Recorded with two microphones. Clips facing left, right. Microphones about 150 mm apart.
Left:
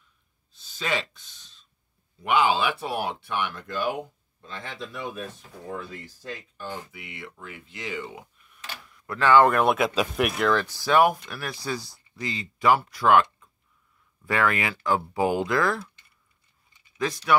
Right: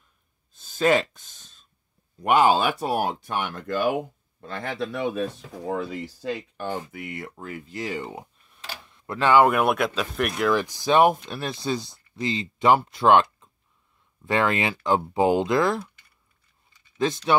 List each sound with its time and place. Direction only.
0.5 s a sound: 50° right (ahead or behind)
2.1 s speech: 45° right (ahead or behind); by 5.2 s 70° right (ahead or behind)
5.7 s speech: 90° right; by 10.5 s centre (ahead or behind)
10.5 s speech: 15° right (ahead or behind)
17.0 s speech: 25° right (ahead or behind)